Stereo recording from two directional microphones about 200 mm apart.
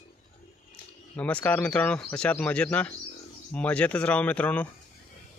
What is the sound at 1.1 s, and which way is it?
Speech, 5° left (ahead or behind).